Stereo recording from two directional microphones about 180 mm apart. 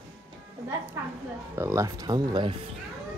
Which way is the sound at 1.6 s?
15° right (ahead or behind).